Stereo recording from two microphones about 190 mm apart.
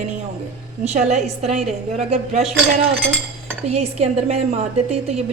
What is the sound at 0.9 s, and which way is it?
Speech, 35° right (ahead or behind).